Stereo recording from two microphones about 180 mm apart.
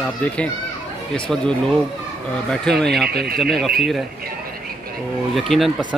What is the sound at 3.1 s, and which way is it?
Speech, 60° right (ahead or behind).